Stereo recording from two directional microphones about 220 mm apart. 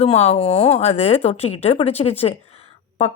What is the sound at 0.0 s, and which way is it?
A woman's voice, 30° left (ahead or behind).